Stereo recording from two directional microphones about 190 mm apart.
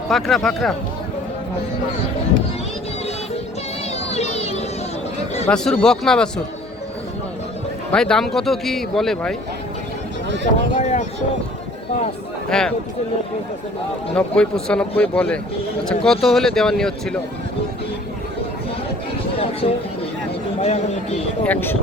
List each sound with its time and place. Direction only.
0.1 s speech: centre (ahead or behind)
4.1 s a sound: 35° left (ahead or behind)
5.5 s speech: 5° left (ahead or behind)
7.9 s speech: 5° left (ahead or behind)
10.2 s speech: 70° right (ahead or behind)
10.8 s speech: 40° left (ahead or behind)
12.5 s speech: 5° left (ahead or behind)
14.2 s speech: 5° left (ahead or behind)
20.6 s speech: 35° left (ahead or behind)
21.4 s speech: 10° left (ahead or behind)